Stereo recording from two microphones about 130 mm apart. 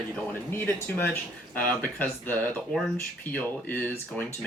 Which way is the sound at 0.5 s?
15° left (ahead or behind).